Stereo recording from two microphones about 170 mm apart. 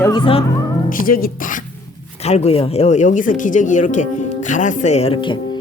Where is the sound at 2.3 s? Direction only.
35° left (ahead or behind).